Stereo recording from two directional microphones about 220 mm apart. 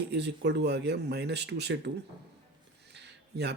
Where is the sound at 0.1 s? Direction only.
50° right (ahead or behind).